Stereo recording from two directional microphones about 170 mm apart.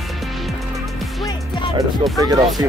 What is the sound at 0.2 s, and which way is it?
Music, centre (ahead or behind).